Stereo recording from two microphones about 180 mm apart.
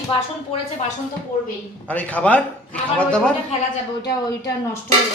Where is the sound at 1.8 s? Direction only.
10° left (ahead or behind).